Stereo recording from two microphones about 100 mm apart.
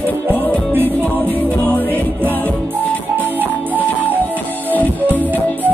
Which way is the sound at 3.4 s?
20° right (ahead or behind).